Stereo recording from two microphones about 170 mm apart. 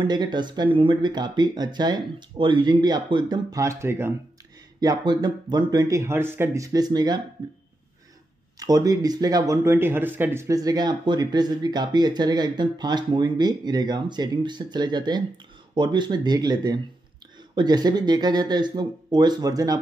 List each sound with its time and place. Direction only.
0.0 s speech: 25° right (ahead or behind)